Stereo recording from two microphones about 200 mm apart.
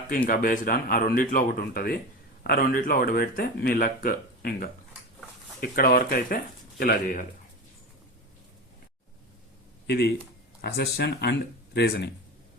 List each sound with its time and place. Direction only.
0.3 s speech: 45° left (ahead or behind)
9.8 s speech: 55° left (ahead or behind)